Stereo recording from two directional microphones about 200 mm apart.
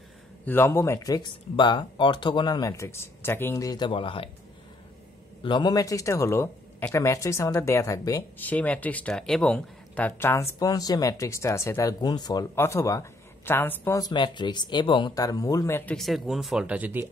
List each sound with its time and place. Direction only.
0.5 s speech: 10° left (ahead or behind)
5.4 s speech: 25° left (ahead or behind); by 17.1 s 10° right (ahead or behind)